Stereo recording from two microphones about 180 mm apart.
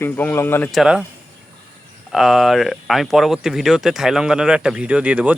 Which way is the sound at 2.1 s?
Centre (ahead or behind).